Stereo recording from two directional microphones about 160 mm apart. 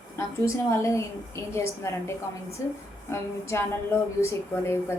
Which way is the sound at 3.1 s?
15° left (ahead or behind).